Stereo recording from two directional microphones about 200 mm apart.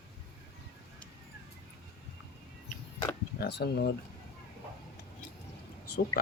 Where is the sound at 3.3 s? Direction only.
55° left (ahead or behind).